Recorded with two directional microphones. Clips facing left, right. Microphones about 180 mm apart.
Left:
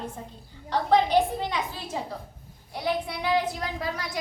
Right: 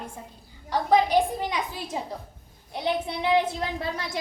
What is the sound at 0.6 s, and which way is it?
A woman's voice, 10° right (ahead or behind).